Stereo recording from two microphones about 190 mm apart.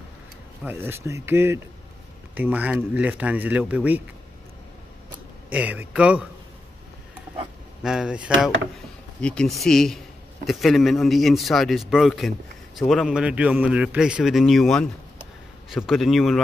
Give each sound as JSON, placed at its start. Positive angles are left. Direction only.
{"t": 0.7, "sound": "a man's voice", "side_deg": -10}
{"t": 5.5, "sound": "a man's voice", "side_deg": -5}
{"t": 7.8, "sound": "a man's voice", "side_deg": -5}